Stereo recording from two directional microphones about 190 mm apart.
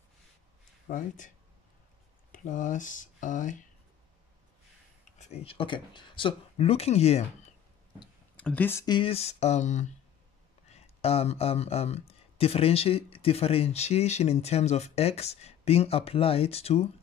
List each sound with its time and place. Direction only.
0.8 s speech: 45° left (ahead or behind)
2.3 s speech: 40° left (ahead or behind)
5.2 s speech: 30° left (ahead or behind)
8.4 s speech: 10° left (ahead or behind)
8.8 s speech: 25° left (ahead or behind)